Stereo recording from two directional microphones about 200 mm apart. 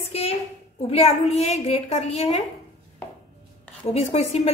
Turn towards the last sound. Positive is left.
turn(degrees=30)  # may be behind; listen again after turning